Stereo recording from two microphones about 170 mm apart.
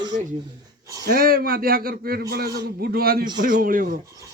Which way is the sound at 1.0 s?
60° right (ahead or behind).